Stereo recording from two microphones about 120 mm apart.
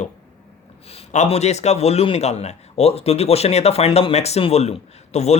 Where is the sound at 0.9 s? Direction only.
65° left (ahead or behind).